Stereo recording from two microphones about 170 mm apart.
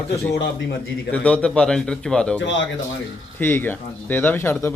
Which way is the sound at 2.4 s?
90° left.